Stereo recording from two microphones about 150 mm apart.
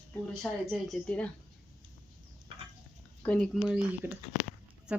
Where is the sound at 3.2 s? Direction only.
5° left (ahead or behind).